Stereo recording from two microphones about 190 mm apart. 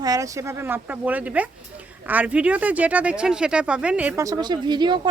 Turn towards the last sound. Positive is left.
turn(degrees=-25)  # may be behind; listen again after turning